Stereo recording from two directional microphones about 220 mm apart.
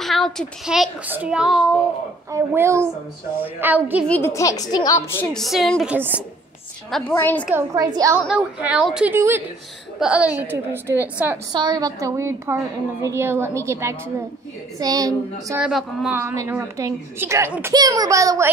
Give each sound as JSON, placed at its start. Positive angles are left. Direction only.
{"t": 0.0, "sound": "a child's voice", "side_deg": 0}
{"t": 4.1, "sound": "a woman's voice", "side_deg": 10}
{"t": 6.9, "sound": "a woman's voice", "side_deg": 10}
{"t": 7.4, "sound": "a woman's voice", "side_deg": -10}
{"t": 15.6, "sound": "a woman's voice", "side_deg": -5}